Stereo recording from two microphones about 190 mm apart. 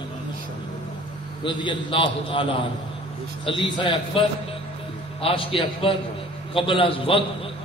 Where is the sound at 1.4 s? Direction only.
25° left (ahead or behind).